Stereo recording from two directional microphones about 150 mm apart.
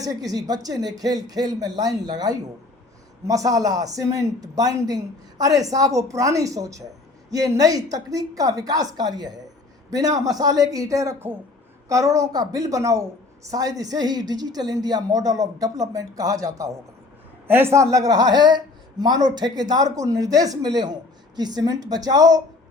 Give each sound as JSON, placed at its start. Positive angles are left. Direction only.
{"t": 0.0, "sound": "speech", "side_deg": -25}